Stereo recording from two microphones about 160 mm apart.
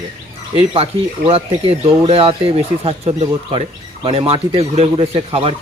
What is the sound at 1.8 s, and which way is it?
Speech, 35° right (ahead or behind).